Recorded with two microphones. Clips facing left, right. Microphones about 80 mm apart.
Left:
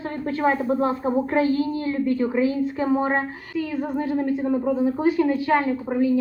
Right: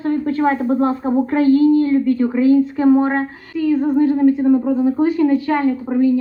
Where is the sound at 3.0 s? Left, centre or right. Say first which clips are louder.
Right 5 dB; centre.